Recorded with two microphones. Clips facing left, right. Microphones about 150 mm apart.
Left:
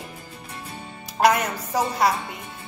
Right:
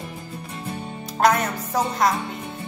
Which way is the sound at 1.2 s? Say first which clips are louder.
Even; 10° left (ahead or behind).